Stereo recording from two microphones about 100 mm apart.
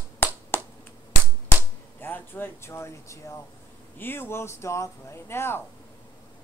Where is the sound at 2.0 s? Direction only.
20° left (ahead or behind).